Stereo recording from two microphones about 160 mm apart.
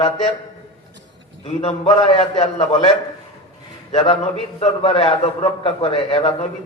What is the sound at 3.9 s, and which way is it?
A man's voice, 40° left (ahead or behind).